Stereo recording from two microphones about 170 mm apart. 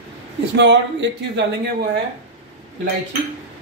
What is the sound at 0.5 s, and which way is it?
Speech, 90° right.